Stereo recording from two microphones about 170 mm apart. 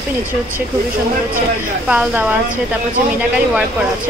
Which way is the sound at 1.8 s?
5° right (ahead or behind).